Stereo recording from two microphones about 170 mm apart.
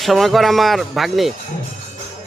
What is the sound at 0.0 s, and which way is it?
Speech, centre (ahead or behind).